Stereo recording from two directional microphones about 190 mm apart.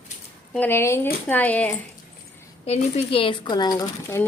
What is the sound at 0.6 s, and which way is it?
Speech, 10° left (ahead or behind).